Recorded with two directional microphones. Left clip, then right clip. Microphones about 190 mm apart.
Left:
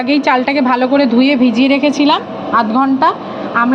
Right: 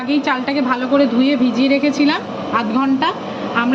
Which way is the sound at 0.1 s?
45° left (ahead or behind).